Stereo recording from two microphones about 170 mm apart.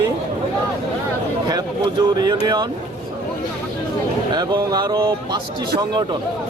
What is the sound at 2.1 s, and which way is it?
Speech, 25° right (ahead or behind).